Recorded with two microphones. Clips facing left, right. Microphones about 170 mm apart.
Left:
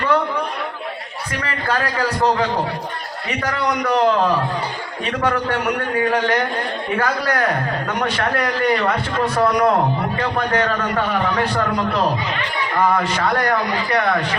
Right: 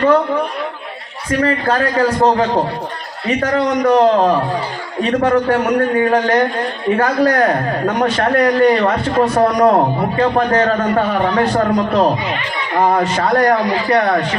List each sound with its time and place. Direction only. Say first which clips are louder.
1.4 s a man's voice: right 7 dB; 40° right (ahead or behind)